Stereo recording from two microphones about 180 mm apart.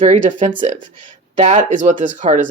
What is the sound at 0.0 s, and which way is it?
Speech, 45° right (ahead or behind).